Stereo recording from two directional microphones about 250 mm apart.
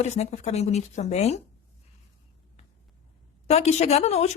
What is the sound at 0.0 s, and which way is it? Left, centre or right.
A woman's voice, left.